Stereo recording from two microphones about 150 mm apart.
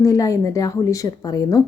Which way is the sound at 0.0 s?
20° left (ahead or behind).